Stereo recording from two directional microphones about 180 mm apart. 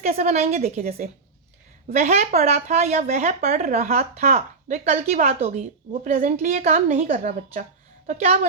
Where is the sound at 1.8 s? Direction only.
35° right (ahead or behind).